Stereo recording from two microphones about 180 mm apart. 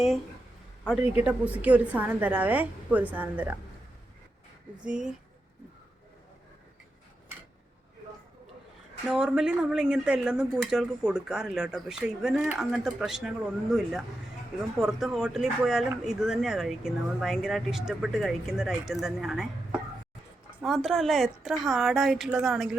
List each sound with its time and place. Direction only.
0.9 s a woman's voice: 5° right (ahead or behind)
4.9 s speech: 5° right (ahead or behind)
9.0 s speech: 5° right (ahead or behind)
20.6 s speech: centre (ahead or behind)